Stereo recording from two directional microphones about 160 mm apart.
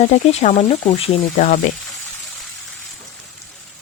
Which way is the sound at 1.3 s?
50° left (ahead or behind).